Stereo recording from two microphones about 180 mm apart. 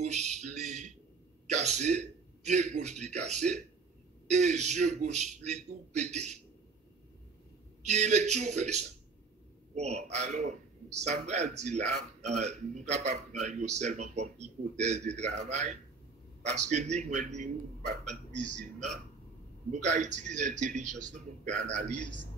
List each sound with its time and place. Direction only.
0.0 s a sound: 40° right (ahead or behind)
1.5 s a man's voice: 40° right (ahead or behind)
7.8 s a man's voice: 40° right (ahead or behind)